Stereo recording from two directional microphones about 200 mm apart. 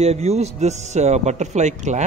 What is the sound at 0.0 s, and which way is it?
Speech, 30° right (ahead or behind).